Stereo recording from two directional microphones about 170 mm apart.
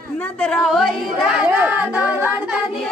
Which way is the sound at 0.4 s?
5° left (ahead or behind).